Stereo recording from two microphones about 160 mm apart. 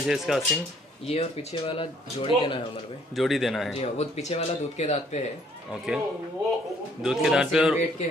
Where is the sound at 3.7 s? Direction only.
40° left (ahead or behind).